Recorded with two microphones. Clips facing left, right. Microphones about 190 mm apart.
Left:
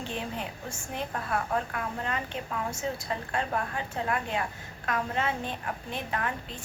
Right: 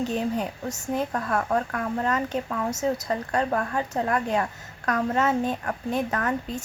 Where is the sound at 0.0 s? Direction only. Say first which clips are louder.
Right 9 dB; 40° right (ahead or behind).